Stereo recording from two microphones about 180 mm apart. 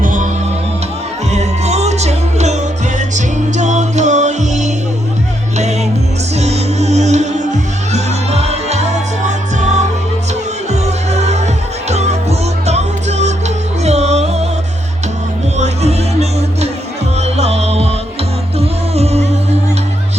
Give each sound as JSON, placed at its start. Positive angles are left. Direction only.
{"t": 0.0, "sound": "music", "side_deg": -45}
{"t": 1.3, "sound": "music", "side_deg": -40}
{"t": 15.5, "sound": "music", "side_deg": -40}
{"t": 17.2, "sound": "music", "side_deg": -35}